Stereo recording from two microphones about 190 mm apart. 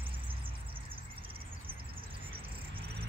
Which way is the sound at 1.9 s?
30° right (ahead or behind).